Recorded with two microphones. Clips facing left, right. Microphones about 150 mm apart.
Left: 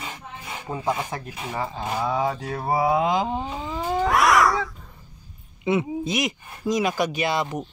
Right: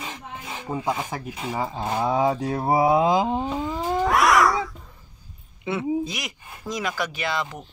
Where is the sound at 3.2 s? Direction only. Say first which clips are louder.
Right 2 dB; 5° right (ahead or behind).